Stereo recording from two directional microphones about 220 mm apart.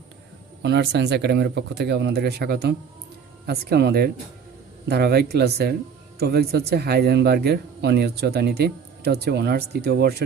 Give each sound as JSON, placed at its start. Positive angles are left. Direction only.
{"t": 0.6, "sound": "speech", "side_deg": -50}